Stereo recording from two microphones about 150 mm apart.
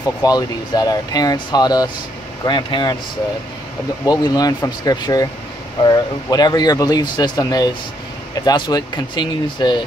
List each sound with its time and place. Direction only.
0.2 s speech: 25° left (ahead or behind)
4.0 s speech: 25° left (ahead or behind)